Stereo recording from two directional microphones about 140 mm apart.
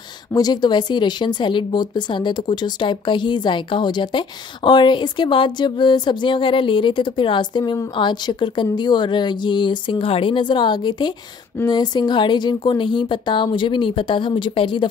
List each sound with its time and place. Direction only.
0.3 s speech: 30° left (ahead or behind)